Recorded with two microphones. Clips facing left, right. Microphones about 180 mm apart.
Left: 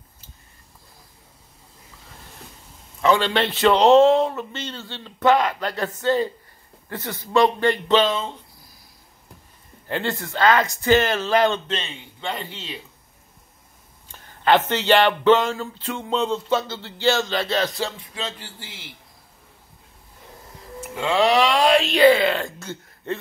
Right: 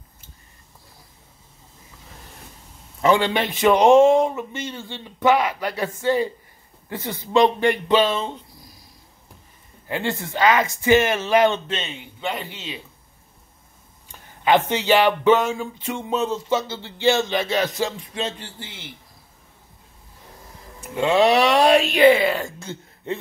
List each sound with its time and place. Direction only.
3.1 s speech: 15° right (ahead or behind)
9.8 s speech: 10° right (ahead or behind)
11.7 s a man's voice: centre (ahead or behind)
14.4 s speech: 10° right (ahead or behind)
21.1 s speech: 10° right (ahead or behind)